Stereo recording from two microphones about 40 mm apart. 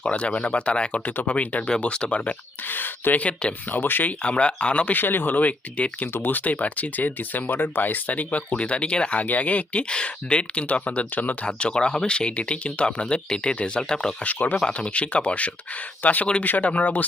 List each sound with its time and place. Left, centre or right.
0.1 s speech: left
1.8 s speech: left
2.6 s speech: left
3.2 s speech: left
3.7 s speech: left
4.0 s speech: left
4.9 s speech: left
11.4 s speech: left
14.3 s speech: left
16.0 s speech: left
16.4 s speech: left